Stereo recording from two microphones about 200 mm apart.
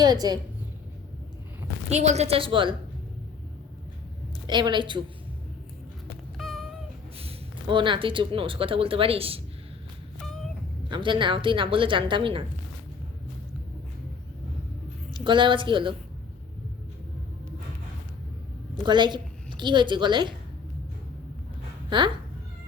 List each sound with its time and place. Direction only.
0.0 s a woman's voice: 20° right (ahead or behind)
1.9 s a woman's voice: 35° right (ahead or behind)
4.4 s a woman's voice: 20° right (ahead or behind)
6.3 s cat: centre (ahead or behind)
7.2 s speech: 25° right (ahead or behind)
10.8 s a woman's voice: 25° right (ahead or behind)
15.1 s a woman's voice: 25° right (ahead or behind)
18.7 s a woman's voice: 25° right (ahead or behind)
21.8 s speech: 25° right (ahead or behind)